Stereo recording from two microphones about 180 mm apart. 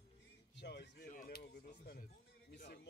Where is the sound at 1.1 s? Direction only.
45° left (ahead or behind).